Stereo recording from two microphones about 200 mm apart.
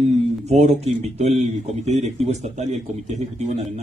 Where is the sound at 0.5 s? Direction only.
35° right (ahead or behind).